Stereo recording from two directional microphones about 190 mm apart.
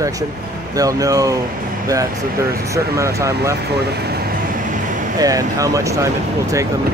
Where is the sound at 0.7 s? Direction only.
20° right (ahead or behind).